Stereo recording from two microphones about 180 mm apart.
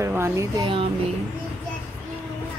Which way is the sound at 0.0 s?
15° right (ahead or behind).